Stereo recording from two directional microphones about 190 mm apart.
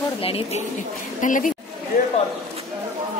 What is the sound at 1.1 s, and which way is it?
Speech, 45° left (ahead or behind).